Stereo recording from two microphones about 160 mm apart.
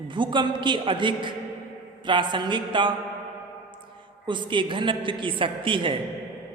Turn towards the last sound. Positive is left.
turn(degrees=-30)  # may be behind; listen again after turning